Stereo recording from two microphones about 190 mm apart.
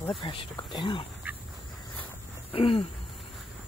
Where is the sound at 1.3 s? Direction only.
10° right (ahead or behind).